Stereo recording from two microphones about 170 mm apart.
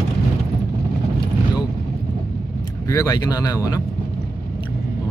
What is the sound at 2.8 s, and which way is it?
Mantra, 20° left (ahead or behind).